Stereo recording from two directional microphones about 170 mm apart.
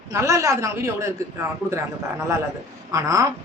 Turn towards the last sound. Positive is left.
turn(degrees=-20)  # may be behind; listen again after turning